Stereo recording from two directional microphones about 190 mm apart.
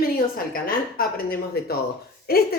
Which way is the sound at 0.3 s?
50° left (ahead or behind).